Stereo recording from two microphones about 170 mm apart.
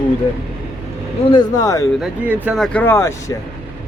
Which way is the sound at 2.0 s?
5° right (ahead or behind).